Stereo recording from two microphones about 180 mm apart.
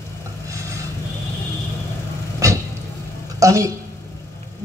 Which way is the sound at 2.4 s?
20° right (ahead or behind).